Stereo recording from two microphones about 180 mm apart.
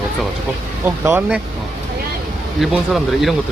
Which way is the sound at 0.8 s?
10° right (ahead or behind).